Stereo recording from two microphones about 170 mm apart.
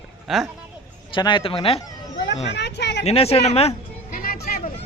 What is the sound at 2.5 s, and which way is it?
Speech, 90° left.